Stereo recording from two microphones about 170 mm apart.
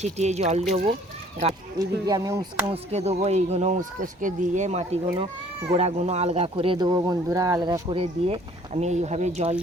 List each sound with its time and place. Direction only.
0.0 s speech: 40° right (ahead or behind)
1.8 s speech: 20° right (ahead or behind)
2.6 s speech: 35° right (ahead or behind)